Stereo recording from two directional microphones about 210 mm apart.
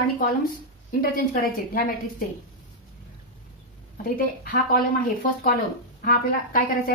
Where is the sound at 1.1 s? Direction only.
40° left (ahead or behind).